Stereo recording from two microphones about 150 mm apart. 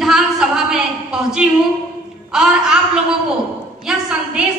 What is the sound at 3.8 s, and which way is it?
Speech, 5° right (ahead or behind).